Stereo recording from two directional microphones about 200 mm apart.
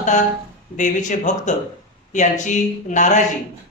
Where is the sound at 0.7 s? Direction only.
40° left (ahead or behind).